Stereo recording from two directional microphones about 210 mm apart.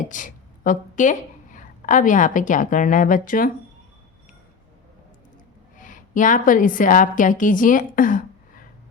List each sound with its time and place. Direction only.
0.0 s a woman's voice: 40° left (ahead or behind)
5.7 s a woman's voice: 40° left (ahead or behind)